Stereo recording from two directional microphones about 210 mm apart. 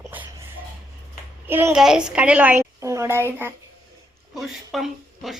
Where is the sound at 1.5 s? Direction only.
10° right (ahead or behind).